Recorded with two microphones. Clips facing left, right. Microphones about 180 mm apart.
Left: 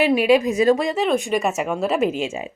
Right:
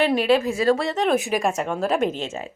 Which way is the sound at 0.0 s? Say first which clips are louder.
Left 3 dB; 10° left (ahead or behind).